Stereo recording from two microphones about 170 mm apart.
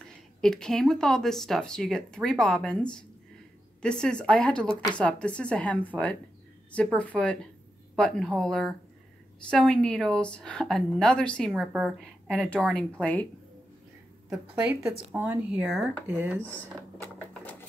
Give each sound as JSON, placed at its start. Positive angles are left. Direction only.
{"t": 0.0, "sound": "a woman's voice", "side_deg": 5}
{"t": 14.3, "sound": "speech", "side_deg": -10}
{"t": 16.3, "sound": "a sound", "side_deg": 10}